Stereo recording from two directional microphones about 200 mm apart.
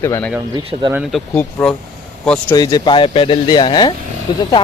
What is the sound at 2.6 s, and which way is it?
Speech, 20° left (ahead or behind).